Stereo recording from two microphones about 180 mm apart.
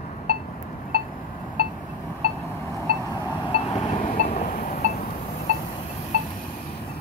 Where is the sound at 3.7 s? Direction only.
35° left (ahead or behind).